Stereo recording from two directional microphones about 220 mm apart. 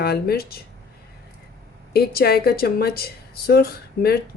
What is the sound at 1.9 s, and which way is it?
Speech, 45° left (ahead or behind).